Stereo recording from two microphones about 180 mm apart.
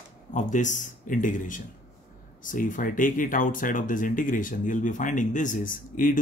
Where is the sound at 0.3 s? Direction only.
45° left (ahead or behind).